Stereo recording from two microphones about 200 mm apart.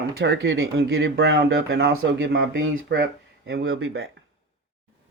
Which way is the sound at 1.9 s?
85° right.